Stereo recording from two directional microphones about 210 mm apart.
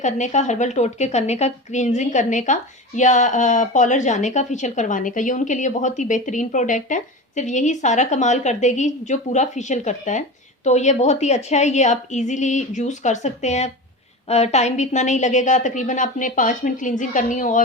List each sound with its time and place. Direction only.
0.0 s a woman's voice: 35° left (ahead or behind)